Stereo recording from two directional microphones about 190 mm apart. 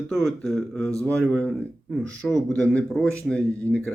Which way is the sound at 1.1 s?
5° left (ahead or behind).